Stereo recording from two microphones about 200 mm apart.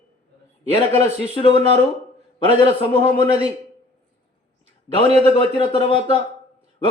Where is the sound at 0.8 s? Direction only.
25° left (ahead or behind).